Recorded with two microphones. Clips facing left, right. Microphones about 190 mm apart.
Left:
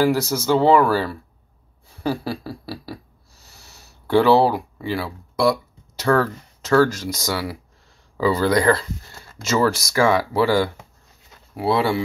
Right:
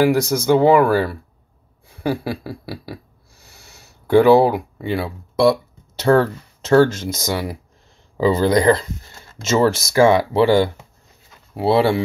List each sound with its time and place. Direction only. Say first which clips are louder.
0.0 s speech: right 3 dB; 15° right (ahead or behind)
1.9 s a sound: right 2 dB; 15° right (ahead or behind)
4.7 s speech: right 3 dB; 20° right (ahead or behind)